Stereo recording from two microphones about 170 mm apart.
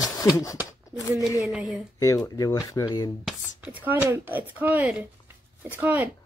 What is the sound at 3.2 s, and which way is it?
A woman's voice, 5° right (ahead or behind).